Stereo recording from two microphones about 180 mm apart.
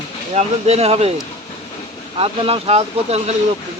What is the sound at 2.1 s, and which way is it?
Speech, 30° right (ahead or behind).